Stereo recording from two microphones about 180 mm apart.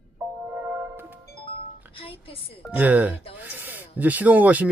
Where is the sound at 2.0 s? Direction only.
30° left (ahead or behind).